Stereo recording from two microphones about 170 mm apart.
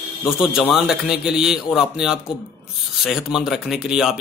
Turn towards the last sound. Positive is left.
turn(degrees=-5)  # may be behind; listen again after turning